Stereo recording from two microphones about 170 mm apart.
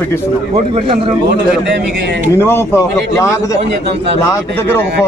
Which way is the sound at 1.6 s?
90° right.